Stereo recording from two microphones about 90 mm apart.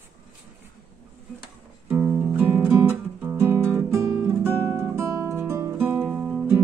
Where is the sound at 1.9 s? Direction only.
25° right (ahead or behind).